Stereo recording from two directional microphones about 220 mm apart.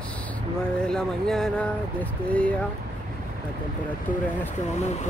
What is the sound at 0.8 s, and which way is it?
Speech, centre (ahead or behind).